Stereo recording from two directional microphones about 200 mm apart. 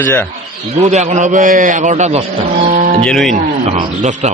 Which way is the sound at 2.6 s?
40° right (ahead or behind).